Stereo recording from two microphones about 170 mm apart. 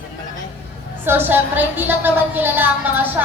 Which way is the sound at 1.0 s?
10° right (ahead or behind).